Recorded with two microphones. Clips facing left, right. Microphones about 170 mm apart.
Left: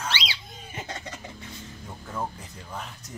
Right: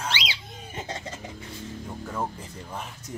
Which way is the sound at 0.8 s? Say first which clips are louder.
Right 2 dB; 25° right (ahead or behind).